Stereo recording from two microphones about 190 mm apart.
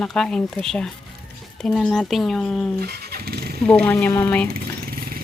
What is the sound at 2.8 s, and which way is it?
Vehicle, 55° right (ahead or behind).